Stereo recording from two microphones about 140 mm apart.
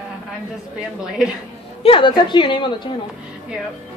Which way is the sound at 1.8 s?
35° left (ahead or behind).